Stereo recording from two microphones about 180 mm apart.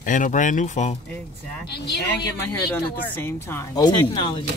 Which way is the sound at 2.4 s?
10° left (ahead or behind).